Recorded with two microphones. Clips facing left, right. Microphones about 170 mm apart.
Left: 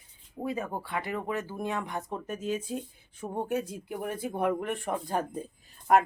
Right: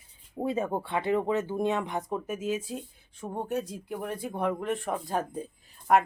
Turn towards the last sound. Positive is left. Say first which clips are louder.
# even
turn(degrees=0)  # may be behind; listen again after turning